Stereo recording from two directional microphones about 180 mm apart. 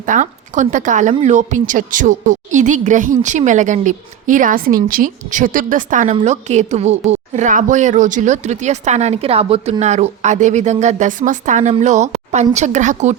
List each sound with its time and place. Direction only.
0.0 s a woman's voice: 45° right (ahead or behind)